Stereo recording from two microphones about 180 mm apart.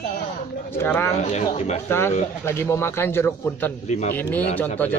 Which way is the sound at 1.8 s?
15° left (ahead or behind).